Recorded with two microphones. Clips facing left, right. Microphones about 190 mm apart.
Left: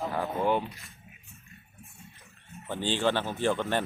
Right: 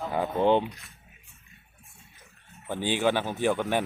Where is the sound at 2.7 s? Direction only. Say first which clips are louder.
Right 2 dB; 10° right (ahead or behind).